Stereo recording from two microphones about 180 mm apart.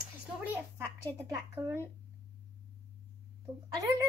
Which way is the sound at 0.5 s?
15° right (ahead or behind).